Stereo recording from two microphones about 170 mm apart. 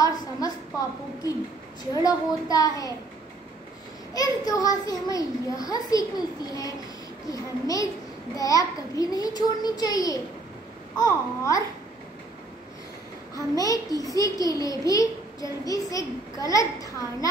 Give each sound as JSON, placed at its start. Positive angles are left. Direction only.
{"t": 0.0, "sound": "a sound", "side_deg": 20}
{"t": 2.0, "sound": "a child's voice", "side_deg": 20}
{"t": 4.1, "sound": "a child's voice", "side_deg": 20}
{"t": 7.2, "sound": "a child's voice", "side_deg": 20}
{"t": 13.3, "sound": "a child's voice", "side_deg": 20}